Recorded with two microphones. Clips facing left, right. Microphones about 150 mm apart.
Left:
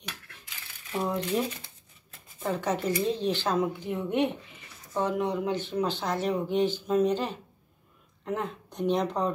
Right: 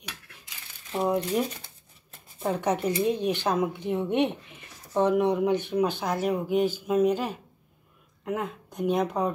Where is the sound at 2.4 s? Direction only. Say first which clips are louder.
Right 2 dB; 20° right (ahead or behind).